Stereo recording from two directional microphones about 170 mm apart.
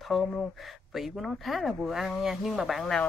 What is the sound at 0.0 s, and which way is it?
Speech, 5° left (ahead or behind).